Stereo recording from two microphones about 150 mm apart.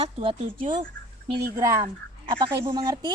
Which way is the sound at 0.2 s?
35° right (ahead or behind).